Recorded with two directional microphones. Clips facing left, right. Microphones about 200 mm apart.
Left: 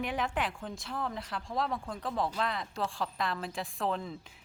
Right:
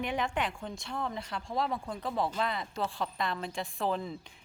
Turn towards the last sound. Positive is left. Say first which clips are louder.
# right 1 dB
turn(degrees=0)  # may be behind; listen again after turning